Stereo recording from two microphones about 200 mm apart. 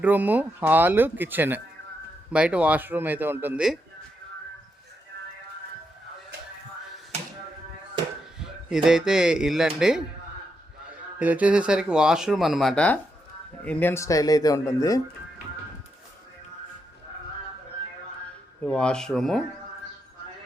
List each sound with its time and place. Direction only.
0.0 s speech: 10° right (ahead or behind)
8.4 s speech: 5° right (ahead or behind)
11.2 s speech: 5° right (ahead or behind); by 15.0 s 15° left (ahead or behind)
18.6 s speech: 5° left (ahead or behind)